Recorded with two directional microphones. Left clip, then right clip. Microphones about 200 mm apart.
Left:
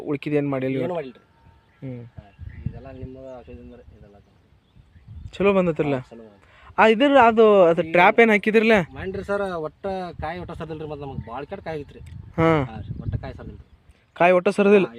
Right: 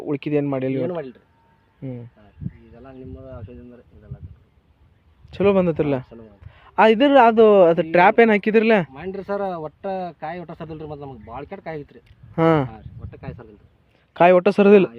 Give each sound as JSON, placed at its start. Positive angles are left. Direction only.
{"t": 0.0, "sound": "a man's voice", "side_deg": -10}
{"t": 0.9, "sound": "speech", "side_deg": -55}
{"t": 1.8, "sound": "a man's voice", "side_deg": -15}
{"t": 2.8, "sound": "speech", "side_deg": -40}
{"t": 5.2, "sound": "a man's voice", "side_deg": -15}
{"t": 8.9, "sound": "speech", "side_deg": -50}
{"t": 14.1, "sound": "speech", "side_deg": -20}